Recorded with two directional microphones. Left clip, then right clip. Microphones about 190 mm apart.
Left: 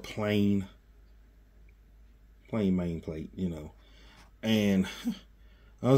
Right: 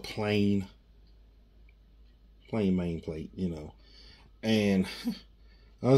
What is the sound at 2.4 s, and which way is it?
Speech, centre (ahead or behind).